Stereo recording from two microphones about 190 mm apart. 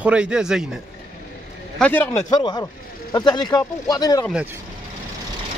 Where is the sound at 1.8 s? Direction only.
10° left (ahead or behind).